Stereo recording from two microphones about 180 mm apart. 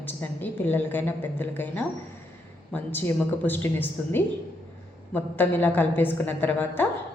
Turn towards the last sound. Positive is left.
turn(degrees=10)  # may be behind; listen again after turning